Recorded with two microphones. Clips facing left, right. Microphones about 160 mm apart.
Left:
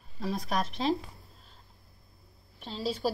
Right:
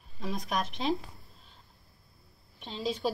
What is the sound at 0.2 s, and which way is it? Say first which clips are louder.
Speech: left 2 dB; 5° left (ahead or behind).